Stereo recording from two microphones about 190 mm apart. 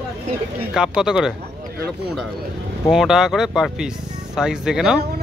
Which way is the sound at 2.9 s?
Centre (ahead or behind).